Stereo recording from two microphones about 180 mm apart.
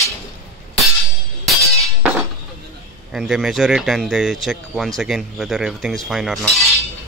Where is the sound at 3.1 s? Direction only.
Centre (ahead or behind).